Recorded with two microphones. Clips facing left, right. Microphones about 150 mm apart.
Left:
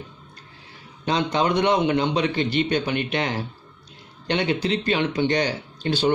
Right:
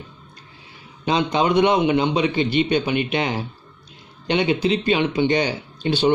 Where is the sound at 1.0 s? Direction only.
15° right (ahead or behind).